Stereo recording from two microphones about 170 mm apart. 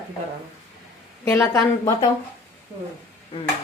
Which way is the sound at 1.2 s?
15° left (ahead or behind).